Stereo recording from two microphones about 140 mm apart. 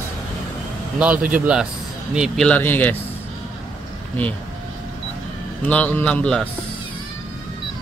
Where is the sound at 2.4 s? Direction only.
10° left (ahead or behind).